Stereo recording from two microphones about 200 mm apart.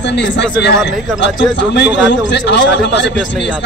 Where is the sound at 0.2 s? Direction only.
60° left (ahead or behind).